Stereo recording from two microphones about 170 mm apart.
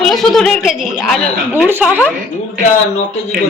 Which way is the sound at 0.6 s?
Centre (ahead or behind).